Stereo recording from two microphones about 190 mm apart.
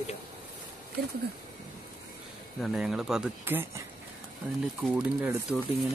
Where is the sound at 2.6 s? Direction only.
Centre (ahead or behind).